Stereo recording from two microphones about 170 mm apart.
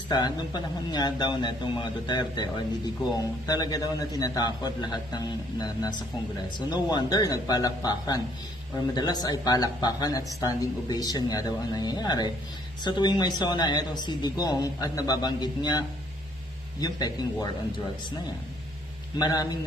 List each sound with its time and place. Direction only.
0.1 s speech: 25° left (ahead or behind)
16.8 s speech: 25° left (ahead or behind)
19.2 s speech: 25° left (ahead or behind)